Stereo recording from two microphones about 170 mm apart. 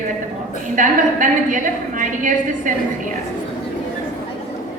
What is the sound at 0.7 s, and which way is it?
A woman's voice, 50° right (ahead or behind).